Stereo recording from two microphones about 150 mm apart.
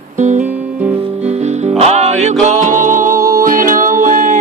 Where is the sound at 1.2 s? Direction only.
50° right (ahead or behind).